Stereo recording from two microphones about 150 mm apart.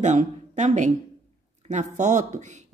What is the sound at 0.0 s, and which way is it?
Speech, 50° right (ahead or behind).